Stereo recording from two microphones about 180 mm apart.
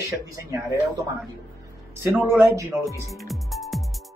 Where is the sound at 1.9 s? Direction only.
10° right (ahead or behind).